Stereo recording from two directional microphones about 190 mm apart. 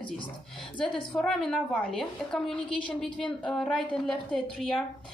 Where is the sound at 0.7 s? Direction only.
5° left (ahead or behind).